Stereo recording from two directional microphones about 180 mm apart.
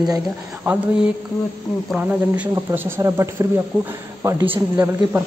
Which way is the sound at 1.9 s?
5° right (ahead or behind).